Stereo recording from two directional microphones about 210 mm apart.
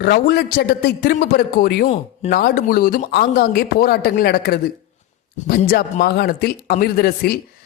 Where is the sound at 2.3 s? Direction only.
45° left (ahead or behind).